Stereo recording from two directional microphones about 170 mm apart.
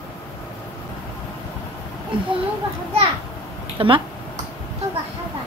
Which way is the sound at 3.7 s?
30° right (ahead or behind).